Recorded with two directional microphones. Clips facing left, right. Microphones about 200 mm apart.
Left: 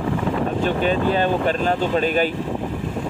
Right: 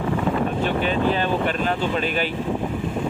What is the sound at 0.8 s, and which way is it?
Speech, 40° left (ahead or behind).